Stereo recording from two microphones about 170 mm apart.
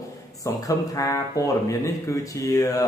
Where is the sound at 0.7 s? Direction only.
20° left (ahead or behind).